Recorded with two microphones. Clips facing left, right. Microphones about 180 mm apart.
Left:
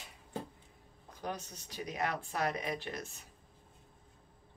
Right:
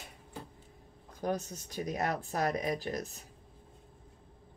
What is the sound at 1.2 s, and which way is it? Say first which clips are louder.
Speech: right 7 dB; 45° right (ahead or behind).